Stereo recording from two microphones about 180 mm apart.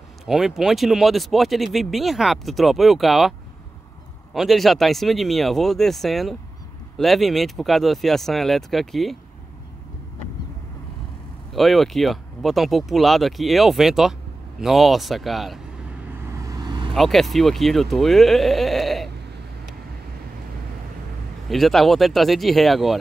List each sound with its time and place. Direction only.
0.3 s speech: centre (ahead or behind)
11.5 s speech: centre (ahead or behind)
16.3 s vehicle: 20° right (ahead or behind)
16.9 s speech: centre (ahead or behind)
21.5 s speech: centre (ahead or behind)